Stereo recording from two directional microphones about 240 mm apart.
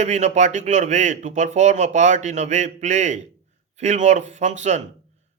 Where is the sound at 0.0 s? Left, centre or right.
Right.